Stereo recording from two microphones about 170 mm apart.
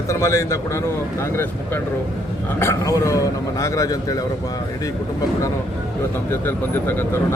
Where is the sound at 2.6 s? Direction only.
15° left (ahead or behind).